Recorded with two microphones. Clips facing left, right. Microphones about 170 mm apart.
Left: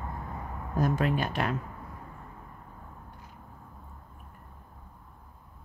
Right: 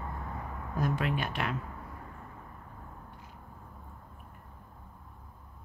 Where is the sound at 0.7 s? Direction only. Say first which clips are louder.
Left 4 dB; 40° left (ahead or behind).